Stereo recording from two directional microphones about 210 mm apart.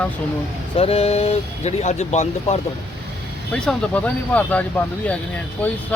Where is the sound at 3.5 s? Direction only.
5° left (ahead or behind).